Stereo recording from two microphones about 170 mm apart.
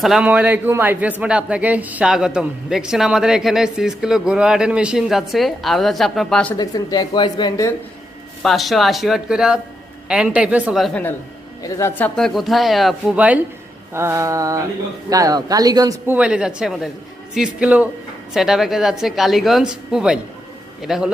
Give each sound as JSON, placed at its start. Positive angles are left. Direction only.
{"t": 0.0, "sound": "a man's voice", "side_deg": -5}
{"t": 6.6, "sound": "speech", "side_deg": 25}
{"t": 8.4, "sound": "a man's voice", "side_deg": 0}
{"t": 11.6, "sound": "speech", "side_deg": 15}
{"t": 16.1, "sound": "a man's voice", "side_deg": -5}